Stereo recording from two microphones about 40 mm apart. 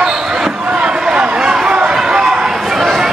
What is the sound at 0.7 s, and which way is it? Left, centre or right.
Run, right.